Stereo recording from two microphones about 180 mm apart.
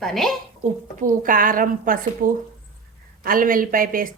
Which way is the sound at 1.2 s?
50° right (ahead or behind).